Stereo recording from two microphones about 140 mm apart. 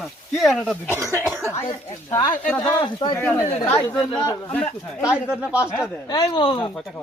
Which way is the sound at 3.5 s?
50° left (ahead or behind).